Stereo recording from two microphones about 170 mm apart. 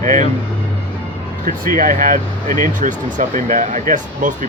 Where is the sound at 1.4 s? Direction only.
55° right (ahead or behind).